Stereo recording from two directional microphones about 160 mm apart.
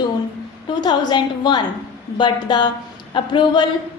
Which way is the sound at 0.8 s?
25° left (ahead or behind).